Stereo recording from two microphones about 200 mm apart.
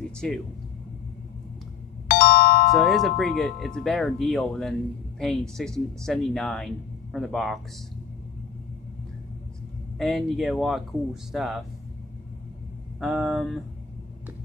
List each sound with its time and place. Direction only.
2.0 s doorbell: 50° left (ahead or behind)
2.7 s speech: centre (ahead or behind)
9.9 s speech: centre (ahead or behind)
13.0 s speech: centre (ahead or behind)